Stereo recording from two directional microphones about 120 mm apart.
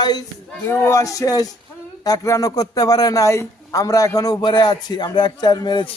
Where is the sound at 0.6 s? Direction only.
20° left (ahead or behind).